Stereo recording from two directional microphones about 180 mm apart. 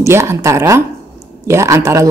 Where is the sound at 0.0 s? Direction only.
15° right (ahead or behind).